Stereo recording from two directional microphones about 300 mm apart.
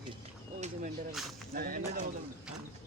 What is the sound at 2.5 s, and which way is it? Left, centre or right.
Speech, centre.